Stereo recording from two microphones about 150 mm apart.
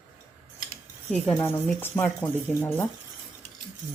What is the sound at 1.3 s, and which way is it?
Speech, 20° left (ahead or behind).